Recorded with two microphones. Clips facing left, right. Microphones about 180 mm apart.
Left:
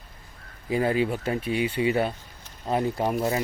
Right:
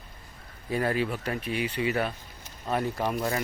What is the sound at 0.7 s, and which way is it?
Speech, 20° left (ahead or behind).